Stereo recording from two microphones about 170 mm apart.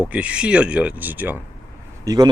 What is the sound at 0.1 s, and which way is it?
Speech, 5° right (ahead or behind).